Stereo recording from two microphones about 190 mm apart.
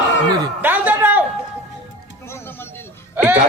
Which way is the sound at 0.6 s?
10° right (ahead or behind).